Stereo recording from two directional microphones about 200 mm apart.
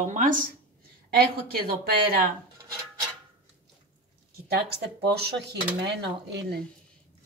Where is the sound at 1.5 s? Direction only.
50° right (ahead or behind).